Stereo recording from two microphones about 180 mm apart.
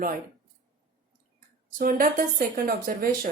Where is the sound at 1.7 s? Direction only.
50° right (ahead or behind).